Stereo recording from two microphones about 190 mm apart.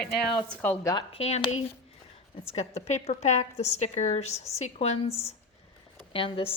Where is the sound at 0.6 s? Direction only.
10° left (ahead or behind).